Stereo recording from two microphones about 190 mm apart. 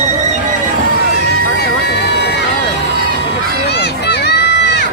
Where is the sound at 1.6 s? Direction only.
60° left (ahead or behind).